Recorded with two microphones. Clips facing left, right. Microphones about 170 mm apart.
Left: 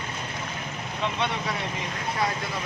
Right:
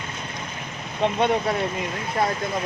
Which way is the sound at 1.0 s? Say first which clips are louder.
Right 8 dB; 50° right (ahead or behind).